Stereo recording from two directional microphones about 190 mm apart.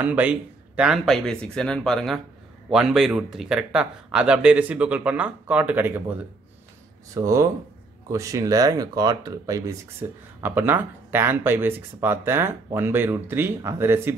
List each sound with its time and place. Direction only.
0.0 s speech: 10° right (ahead or behind)
7.2 s speech: 15° right (ahead or behind)